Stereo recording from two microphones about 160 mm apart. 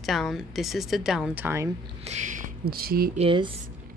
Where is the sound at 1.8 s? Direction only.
45° right (ahead or behind); by 3.1 s 70° right (ahead or behind).